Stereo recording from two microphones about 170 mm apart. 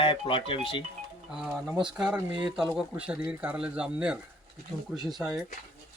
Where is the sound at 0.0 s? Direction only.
30° left (ahead or behind).